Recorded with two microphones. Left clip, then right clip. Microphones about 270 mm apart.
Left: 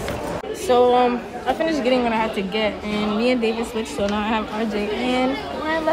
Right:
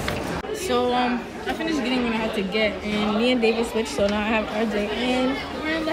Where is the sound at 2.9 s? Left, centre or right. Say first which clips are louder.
Left 1 dB; centre.